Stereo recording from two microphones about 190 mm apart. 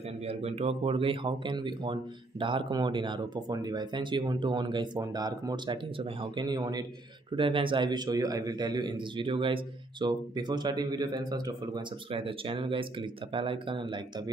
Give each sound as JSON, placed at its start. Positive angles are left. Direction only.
{"t": 0.3, "sound": "a man's voice", "side_deg": -35}